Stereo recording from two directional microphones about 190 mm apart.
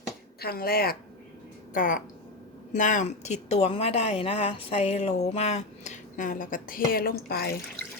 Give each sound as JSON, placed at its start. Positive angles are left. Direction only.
{"t": 0.3, "sound": "speech", "side_deg": 55}